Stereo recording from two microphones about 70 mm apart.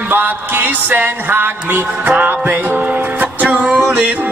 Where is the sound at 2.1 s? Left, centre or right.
Centre.